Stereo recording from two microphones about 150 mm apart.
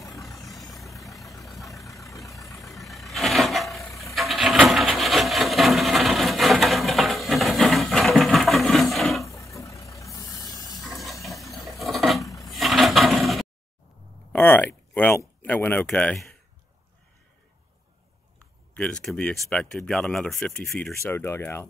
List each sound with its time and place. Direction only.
0.0 s vehicle: centre (ahead or behind)
2.1 s vehicle: 20° left (ahead or behind)
2.4 s vehicle: centre (ahead or behind)
4.1 s wood: centre (ahead or behind)
9.3 s vehicle: 20° left (ahead or behind)
10.7 s a sound: centre (ahead or behind)
12.4 s drawer open or close: centre (ahead or behind)
14.3 s a sound: 10° left (ahead or behind)
18.8 s speech: 5° left (ahead or behind)
21.0 s speech: 15° left (ahead or behind)